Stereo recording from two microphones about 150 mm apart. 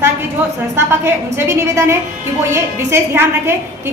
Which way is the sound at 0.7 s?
15° right (ahead or behind).